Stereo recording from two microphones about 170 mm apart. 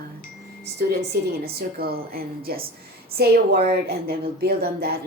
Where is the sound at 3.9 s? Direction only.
65° right (ahead or behind).